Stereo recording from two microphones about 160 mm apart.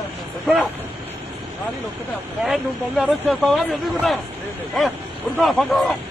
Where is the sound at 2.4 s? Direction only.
Centre (ahead or behind).